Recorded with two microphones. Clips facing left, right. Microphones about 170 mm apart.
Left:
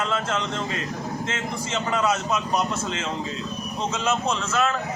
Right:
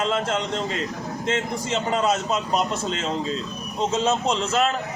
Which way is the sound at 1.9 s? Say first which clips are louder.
Right 1 dB; 30° right (ahead or behind).